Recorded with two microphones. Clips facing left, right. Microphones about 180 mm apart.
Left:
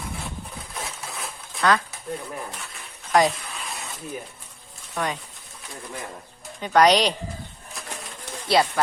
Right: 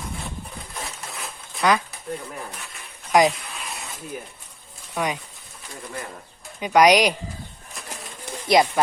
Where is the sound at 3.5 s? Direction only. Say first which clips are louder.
Even; centre (ahead or behind).